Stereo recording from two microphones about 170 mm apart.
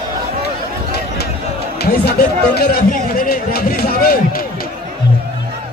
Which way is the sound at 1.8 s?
65° left (ahead or behind).